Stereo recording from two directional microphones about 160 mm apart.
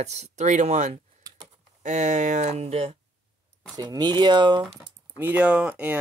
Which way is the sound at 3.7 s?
25° right (ahead or behind).